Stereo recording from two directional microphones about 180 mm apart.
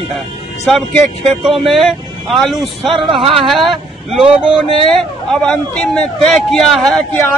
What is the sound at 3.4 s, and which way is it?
Speech, centre (ahead or behind).